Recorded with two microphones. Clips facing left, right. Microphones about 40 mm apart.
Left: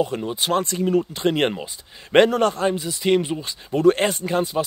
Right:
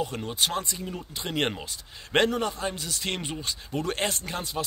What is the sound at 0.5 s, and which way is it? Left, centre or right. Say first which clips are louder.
Speech: left 11 dB; left.